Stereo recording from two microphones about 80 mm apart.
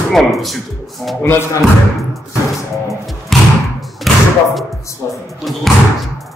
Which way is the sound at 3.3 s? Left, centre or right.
Centre.